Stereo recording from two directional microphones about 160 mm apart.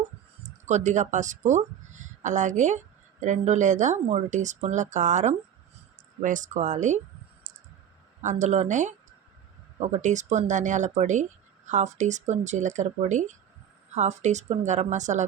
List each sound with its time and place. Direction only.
0.7 s speech: 50° right (ahead or behind)
7.5 s clicking: 50° right (ahead or behind)
8.2 s speech: 50° right (ahead or behind)